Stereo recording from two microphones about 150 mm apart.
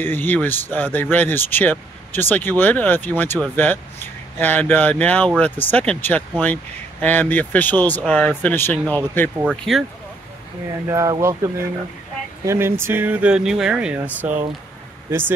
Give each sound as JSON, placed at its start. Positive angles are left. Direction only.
{"t": 0.0, "sound": "speech", "side_deg": 15}
{"t": 9.4, "sound": "speech", "side_deg": -5}
{"t": 10.9, "sound": "speech", "side_deg": -20}
{"t": 12.4, "sound": "speech", "side_deg": -15}